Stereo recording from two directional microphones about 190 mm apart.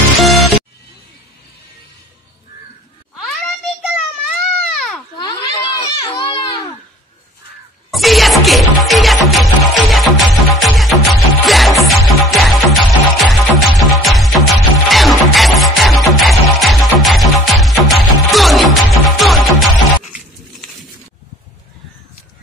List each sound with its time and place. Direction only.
0.2 s music: centre (ahead or behind)
3.2 s a sound: centre (ahead or behind)
5.1 s children playing: 20° left (ahead or behind)
7.9 s music: centre (ahead or behind)